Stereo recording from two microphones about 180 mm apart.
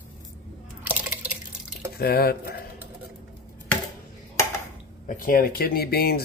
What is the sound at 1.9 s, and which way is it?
Speech, 60° left (ahead or behind).